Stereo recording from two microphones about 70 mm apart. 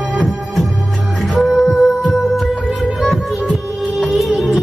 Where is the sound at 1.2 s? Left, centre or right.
Centre.